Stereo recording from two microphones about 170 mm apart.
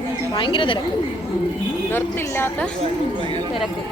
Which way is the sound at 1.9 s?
15° left (ahead or behind).